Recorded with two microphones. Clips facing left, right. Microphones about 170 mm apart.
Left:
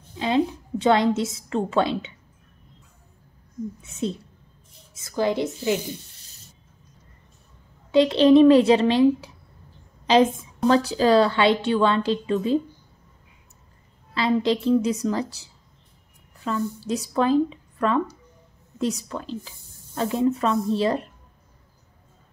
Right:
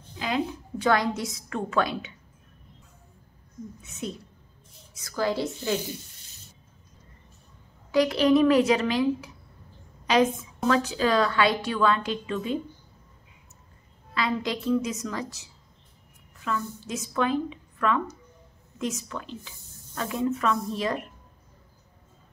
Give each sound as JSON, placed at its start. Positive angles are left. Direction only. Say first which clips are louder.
{"t": 0.2, "sound": "a woman's voice", "louder": "left 6 dB", "side_deg": 25}
{"t": 3.8, "sound": "a woman's voice", "louder": "left 6 dB", "side_deg": 30}
{"t": 7.9, "sound": "a woman's voice", "louder": "left 5 dB", "side_deg": 25}
{"t": 10.7, "sound": "a woman's voice", "louder": "left 5 dB", "side_deg": 35}
{"t": 14.1, "sound": "a woman's voice", "louder": "left 7 dB", "side_deg": 30}